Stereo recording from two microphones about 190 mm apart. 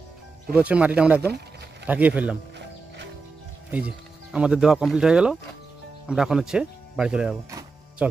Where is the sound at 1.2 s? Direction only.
60° right (ahead or behind).